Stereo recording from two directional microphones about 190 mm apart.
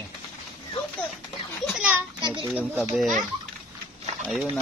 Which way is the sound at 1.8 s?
5° right (ahead or behind).